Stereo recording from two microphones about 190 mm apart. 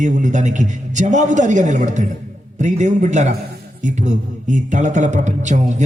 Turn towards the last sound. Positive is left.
turn(degrees=-40)  # may be behind; listen again after turning